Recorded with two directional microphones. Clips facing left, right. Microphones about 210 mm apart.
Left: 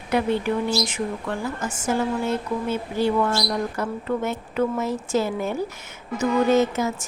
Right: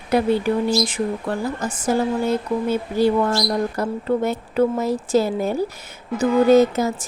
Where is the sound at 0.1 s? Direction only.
35° right (ahead or behind).